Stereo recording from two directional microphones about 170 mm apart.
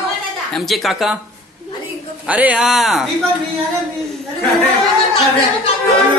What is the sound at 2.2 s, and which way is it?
Speech, 10° right (ahead or behind).